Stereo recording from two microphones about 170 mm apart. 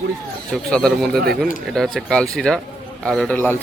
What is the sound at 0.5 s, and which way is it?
Speech, centre (ahead or behind).